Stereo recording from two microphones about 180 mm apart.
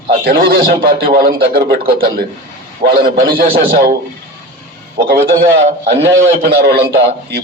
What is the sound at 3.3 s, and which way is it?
Speech, 55° right (ahead or behind).